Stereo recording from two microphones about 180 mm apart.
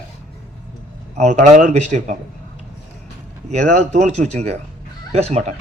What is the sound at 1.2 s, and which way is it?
Speech, 40° right (ahead or behind).